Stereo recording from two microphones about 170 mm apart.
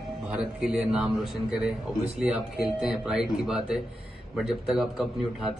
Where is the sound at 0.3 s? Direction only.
5° right (ahead or behind).